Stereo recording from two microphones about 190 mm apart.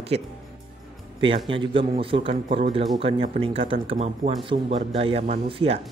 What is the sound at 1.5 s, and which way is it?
A man's voice, 30° right (ahead or behind).